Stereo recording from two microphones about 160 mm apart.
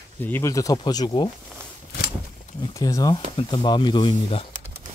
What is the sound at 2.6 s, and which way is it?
Speech, 20° left (ahead or behind).